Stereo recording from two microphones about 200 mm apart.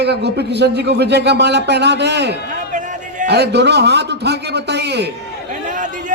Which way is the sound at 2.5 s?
40° right (ahead or behind).